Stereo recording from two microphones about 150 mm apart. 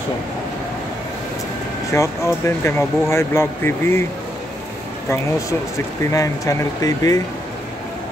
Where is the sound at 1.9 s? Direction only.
20° left (ahead or behind).